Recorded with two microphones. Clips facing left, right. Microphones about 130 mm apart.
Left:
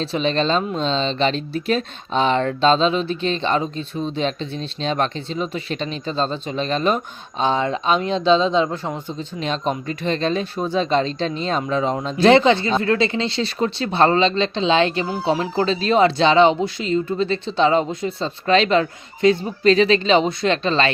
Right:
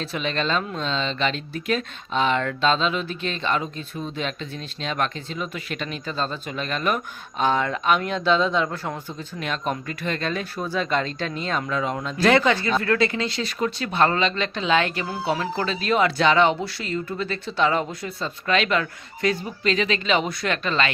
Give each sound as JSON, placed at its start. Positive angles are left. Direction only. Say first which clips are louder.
{"t": 0.0, "sound": "speech", "louder": "left 6 dB", "side_deg": 30}